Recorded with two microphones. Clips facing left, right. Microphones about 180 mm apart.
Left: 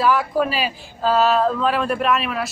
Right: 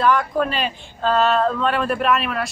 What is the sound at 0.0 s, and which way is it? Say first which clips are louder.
Speech: even; 5° left (ahead or behind).